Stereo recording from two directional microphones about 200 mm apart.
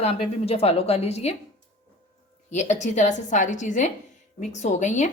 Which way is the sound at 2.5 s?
35° left (ahead or behind).